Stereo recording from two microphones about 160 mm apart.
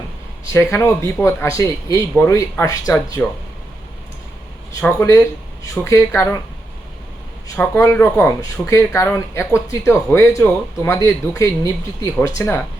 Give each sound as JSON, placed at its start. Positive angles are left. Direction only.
{"t": 0.5, "sound": "a man's voice", "side_deg": 15}
{"t": 4.9, "sound": "a man's voice", "side_deg": 20}
{"t": 7.4, "sound": "speech", "side_deg": 15}